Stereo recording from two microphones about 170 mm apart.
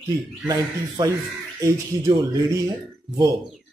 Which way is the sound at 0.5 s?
20° right (ahead or behind).